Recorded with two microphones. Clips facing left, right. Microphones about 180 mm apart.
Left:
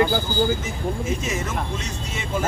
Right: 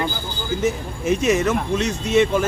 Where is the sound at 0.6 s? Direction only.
70° right (ahead or behind).